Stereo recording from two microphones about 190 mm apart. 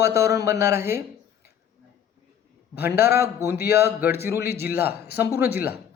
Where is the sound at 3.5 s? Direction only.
60° left (ahead or behind).